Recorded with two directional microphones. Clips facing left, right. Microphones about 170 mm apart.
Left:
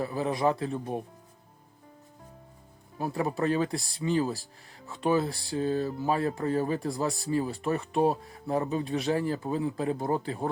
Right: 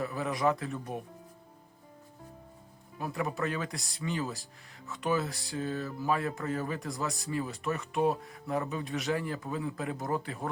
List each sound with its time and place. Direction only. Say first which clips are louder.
0.0 s speech: left 3 dB; 30° left (ahead or behind)
3.0 s speech: left 4 dB; 30° left (ahead or behind)